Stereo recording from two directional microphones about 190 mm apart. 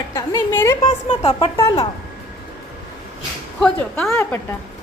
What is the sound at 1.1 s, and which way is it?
Speech, 30° left (ahead or behind).